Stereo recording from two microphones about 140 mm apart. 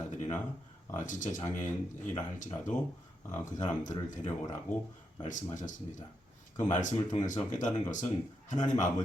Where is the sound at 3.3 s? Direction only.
60° left (ahead or behind).